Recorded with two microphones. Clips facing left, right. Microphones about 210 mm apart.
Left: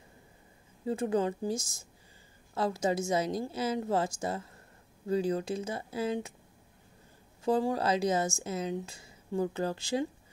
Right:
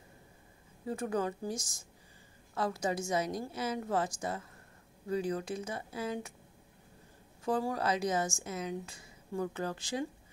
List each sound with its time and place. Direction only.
0.8 s speech: 25° left (ahead or behind)
7.4 s speech: 25° left (ahead or behind)